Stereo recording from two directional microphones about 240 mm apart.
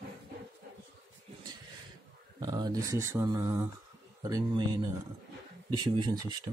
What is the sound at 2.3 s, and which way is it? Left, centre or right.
Speech, centre.